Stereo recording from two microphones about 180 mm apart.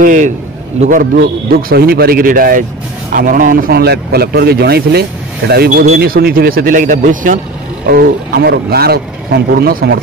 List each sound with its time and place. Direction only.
0.0 s a man's voice: 45° right (ahead or behind)